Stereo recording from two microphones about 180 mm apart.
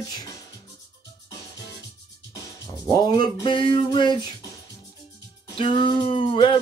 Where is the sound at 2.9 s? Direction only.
25° left (ahead or behind).